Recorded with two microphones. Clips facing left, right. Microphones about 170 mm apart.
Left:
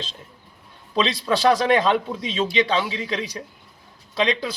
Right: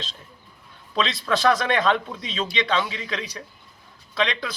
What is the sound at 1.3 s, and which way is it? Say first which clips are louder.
A man's voice: left 3 dB; 15° left (ahead or behind).